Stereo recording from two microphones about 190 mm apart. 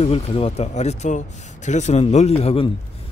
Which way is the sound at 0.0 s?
30° left (ahead or behind).